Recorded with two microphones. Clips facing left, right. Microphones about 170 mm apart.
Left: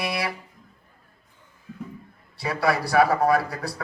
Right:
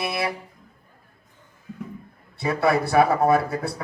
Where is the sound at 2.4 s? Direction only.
25° right (ahead or behind).